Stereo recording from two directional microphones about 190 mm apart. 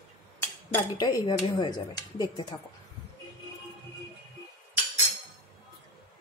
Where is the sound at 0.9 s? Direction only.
20° left (ahead or behind).